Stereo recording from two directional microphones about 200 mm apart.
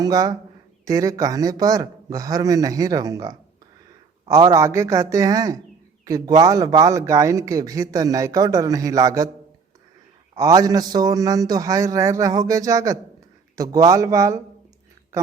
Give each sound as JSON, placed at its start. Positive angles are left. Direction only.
{"t": 0.0, "sound": "speech", "side_deg": -20}
{"t": 10.3, "sound": "speech", "side_deg": -15}